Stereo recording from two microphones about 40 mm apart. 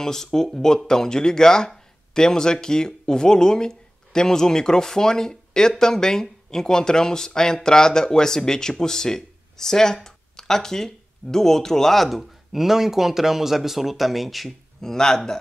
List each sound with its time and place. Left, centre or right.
0.0 s speech: centre
14.8 s speech: centre